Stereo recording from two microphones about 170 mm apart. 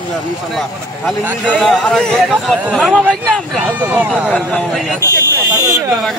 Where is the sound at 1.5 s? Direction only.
5° left (ahead or behind).